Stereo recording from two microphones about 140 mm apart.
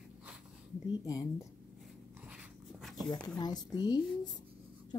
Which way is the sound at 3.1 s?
30° left (ahead or behind).